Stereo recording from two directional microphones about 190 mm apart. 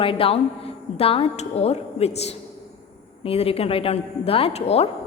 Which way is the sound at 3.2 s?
30° left (ahead or behind).